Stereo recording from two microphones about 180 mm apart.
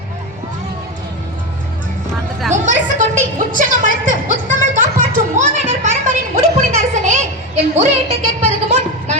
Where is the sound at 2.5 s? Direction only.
45° right (ahead or behind).